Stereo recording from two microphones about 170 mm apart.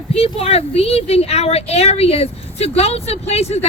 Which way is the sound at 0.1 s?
35° left (ahead or behind).